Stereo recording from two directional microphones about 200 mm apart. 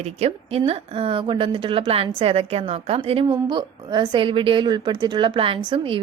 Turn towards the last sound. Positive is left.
turn(degrees=-25)  # may be behind; listen again after turning